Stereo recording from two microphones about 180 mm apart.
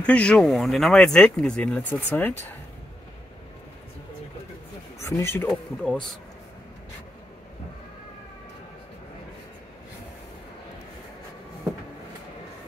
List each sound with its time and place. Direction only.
0.0 s speech: 5° left (ahead or behind)
5.0 s a man's voice: 15° left (ahead or behind)
5.5 s speech: centre (ahead or behind)